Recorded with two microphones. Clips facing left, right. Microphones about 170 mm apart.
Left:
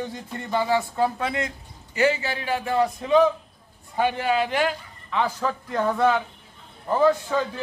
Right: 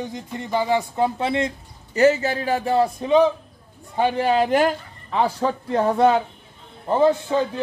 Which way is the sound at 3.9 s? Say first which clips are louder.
Right 4 dB; 35° right (ahead or behind).